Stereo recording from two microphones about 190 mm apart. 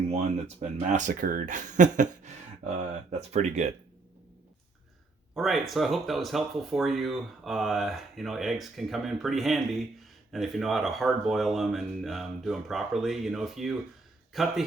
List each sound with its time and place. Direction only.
0.1 s speech: 35° right (ahead or behind)
5.3 s speech: centre (ahead or behind)